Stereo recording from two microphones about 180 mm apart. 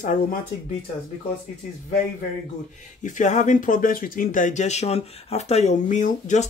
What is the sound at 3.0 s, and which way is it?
Speech, 45° left (ahead or behind).